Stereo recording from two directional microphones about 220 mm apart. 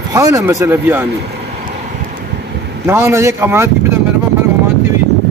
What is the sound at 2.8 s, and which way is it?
Speech, 10° right (ahead or behind).